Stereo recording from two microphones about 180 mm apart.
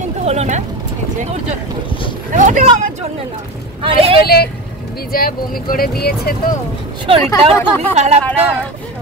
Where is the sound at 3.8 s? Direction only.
30° right (ahead or behind).